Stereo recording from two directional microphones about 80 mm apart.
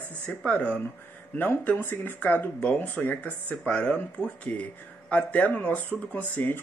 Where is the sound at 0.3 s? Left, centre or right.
Centre.